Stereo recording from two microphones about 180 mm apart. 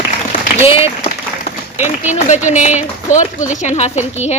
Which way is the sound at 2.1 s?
40° left (ahead or behind).